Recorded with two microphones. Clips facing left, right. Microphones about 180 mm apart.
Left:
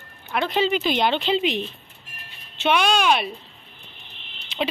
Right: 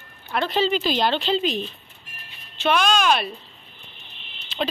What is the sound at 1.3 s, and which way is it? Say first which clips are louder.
Speech: left 1 dB; 70° left (ahead or behind).